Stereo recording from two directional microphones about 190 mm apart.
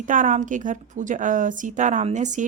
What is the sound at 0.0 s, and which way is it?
A woman's voice, 40° right (ahead or behind).